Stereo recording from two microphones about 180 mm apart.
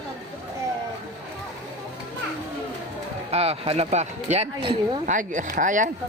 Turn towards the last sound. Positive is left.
turn(degrees=-45)  # may be behind; listen again after turning